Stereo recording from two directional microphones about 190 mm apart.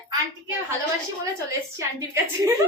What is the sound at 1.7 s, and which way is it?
Speech, 15° right (ahead or behind).